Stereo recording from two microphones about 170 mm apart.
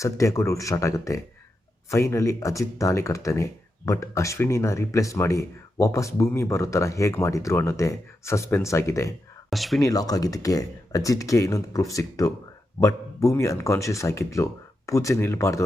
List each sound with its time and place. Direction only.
0.0 s speech: 20° left (ahead or behind)
9.5 s speech: centre (ahead or behind)
9.8 s speech: 20° left (ahead or behind)